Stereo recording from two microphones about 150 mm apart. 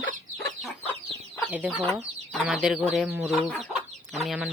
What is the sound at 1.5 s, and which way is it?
Speech, 10° right (ahead or behind).